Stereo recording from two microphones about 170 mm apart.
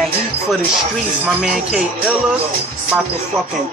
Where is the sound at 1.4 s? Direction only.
5° right (ahead or behind).